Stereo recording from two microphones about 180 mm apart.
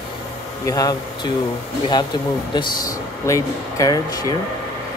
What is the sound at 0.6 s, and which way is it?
Speech, 20° left (ahead or behind).